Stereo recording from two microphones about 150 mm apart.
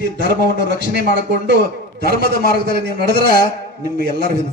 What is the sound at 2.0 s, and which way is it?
Speech, 90° right.